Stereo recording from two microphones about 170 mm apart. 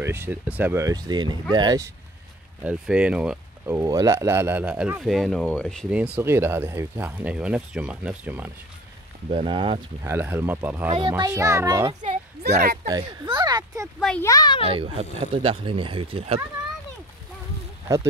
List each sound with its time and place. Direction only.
0.0 s speech: 15° right (ahead or behind)
2.6 s speech: 5° right (ahead or behind)
3.7 s speech: 20° right (ahead or behind); by 5.9 s 5° left (ahead or behind)
5.9 s speech: 10° right (ahead or behind)
9.3 s speech: 30° right (ahead or behind)
10.0 s speech: 10° right (ahead or behind)
10.9 s speech: 25° right (ahead or behind)
13.9 s speech: 5° left (ahead or behind)
14.2 s a child's voice: 25° left (ahead or behind)
14.7 s speech: 30° right (ahead or behind)